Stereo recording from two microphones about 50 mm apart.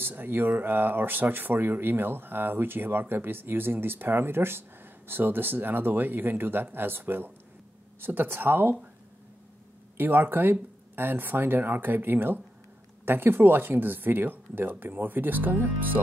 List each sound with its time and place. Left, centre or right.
0.0 s speech: right
9.9 s speech: right